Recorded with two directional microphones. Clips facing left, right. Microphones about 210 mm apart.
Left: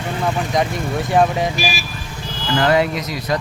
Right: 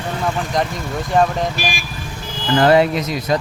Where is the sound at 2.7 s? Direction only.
25° right (ahead or behind).